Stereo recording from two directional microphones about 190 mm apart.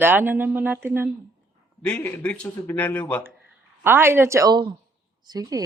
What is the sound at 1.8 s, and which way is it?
A man's voice, 5° left (ahead or behind).